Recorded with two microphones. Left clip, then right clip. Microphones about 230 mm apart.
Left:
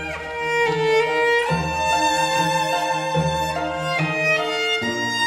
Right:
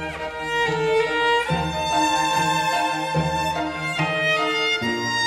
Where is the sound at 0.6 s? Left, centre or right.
Left.